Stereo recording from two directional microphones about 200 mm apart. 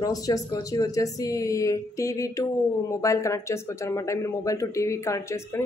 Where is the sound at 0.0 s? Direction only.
20° left (ahead or behind).